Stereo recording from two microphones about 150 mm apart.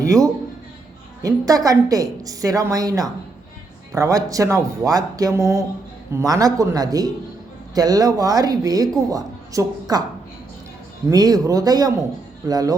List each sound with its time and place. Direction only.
0.0 s a man's voice: 20° right (ahead or behind)
11.1 s a woman's voice: 25° right (ahead or behind)